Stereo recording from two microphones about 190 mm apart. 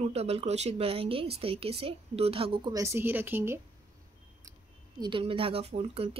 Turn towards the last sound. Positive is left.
turn(degrees=-30)  # may be behind; listen again after turning